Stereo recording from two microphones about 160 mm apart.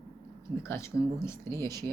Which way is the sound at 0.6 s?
15° left (ahead or behind).